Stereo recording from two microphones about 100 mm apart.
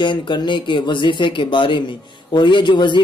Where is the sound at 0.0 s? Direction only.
50° left (ahead or behind).